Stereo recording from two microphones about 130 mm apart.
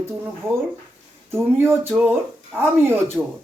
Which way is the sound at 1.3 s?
20° right (ahead or behind).